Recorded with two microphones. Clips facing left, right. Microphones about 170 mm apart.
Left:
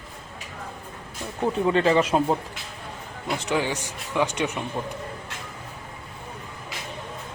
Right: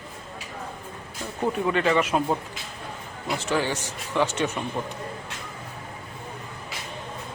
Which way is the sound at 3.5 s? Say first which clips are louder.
Even; 15° left (ahead or behind).